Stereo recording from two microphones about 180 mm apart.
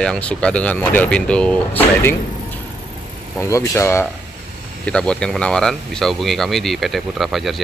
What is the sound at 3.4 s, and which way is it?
Speech, 15° left (ahead or behind).